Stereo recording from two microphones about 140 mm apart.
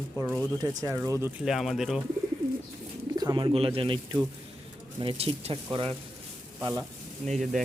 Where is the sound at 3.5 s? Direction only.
40° right (ahead or behind).